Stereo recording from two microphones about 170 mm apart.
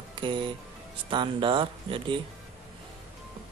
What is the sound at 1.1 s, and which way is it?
A man's voice, 30° right (ahead or behind).